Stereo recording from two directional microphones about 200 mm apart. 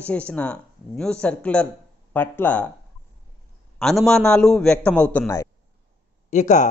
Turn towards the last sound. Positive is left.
turn(degrees=40)  # may be behind; listen again after turning